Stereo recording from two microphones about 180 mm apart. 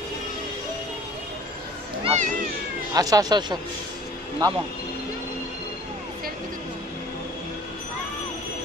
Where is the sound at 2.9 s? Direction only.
20° right (ahead or behind).